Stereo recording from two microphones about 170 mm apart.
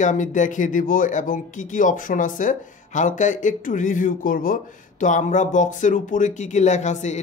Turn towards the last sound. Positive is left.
turn(degrees=45)  # may be behind; listen again after turning